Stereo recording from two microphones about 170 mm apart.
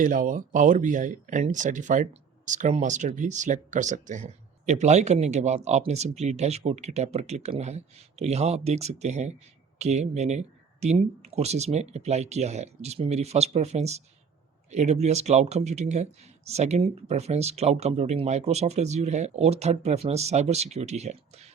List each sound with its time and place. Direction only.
0.0 s speech: 50° right (ahead or behind)